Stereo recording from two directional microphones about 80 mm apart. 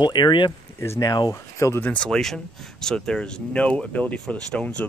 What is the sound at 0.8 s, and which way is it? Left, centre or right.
Speech, left.